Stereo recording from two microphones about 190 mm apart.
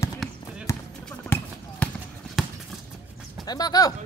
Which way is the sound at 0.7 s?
15° left (ahead or behind).